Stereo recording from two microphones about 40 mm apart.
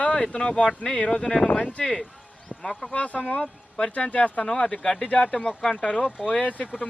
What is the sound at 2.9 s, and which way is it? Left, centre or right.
Speech, left.